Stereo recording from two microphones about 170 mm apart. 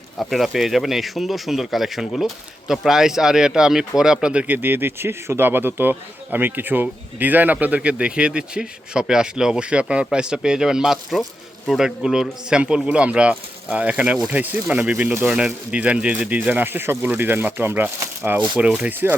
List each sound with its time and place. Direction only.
0.2 s speech: centre (ahead or behind)